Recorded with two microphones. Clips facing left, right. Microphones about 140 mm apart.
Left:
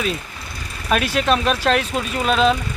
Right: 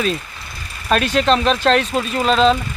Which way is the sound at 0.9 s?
10° left (ahead or behind).